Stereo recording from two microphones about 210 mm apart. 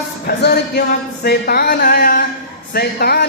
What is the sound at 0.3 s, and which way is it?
Speech, 45° left (ahead or behind).